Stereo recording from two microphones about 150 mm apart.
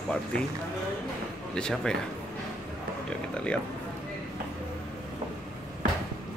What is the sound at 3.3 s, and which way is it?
Speech, 5° left (ahead or behind).